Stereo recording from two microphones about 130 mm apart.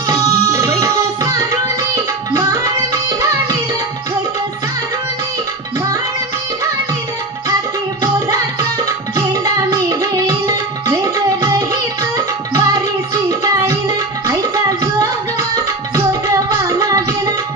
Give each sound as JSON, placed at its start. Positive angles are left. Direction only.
{"t": 0.1, "sound": "tabla", "side_deg": -25}
{"t": 2.3, "sound": "music", "side_deg": -25}
{"t": 8.0, "sound": "tabla", "side_deg": -25}
{"t": 12.5, "sound": "music", "side_deg": -25}